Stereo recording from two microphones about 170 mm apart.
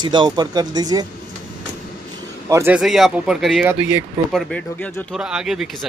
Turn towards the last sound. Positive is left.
turn(degrees=-5)  # may be behind; listen again after turning